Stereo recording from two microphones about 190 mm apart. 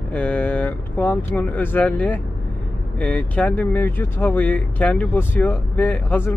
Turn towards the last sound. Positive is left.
turn(degrees=10)  # may be behind; listen again after turning